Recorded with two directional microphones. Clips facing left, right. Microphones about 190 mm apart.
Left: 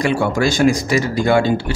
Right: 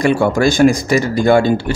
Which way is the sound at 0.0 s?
50° right (ahead or behind).